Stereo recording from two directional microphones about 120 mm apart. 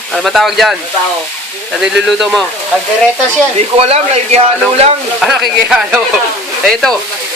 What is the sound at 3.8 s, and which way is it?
Speech, 60° right (ahead or behind).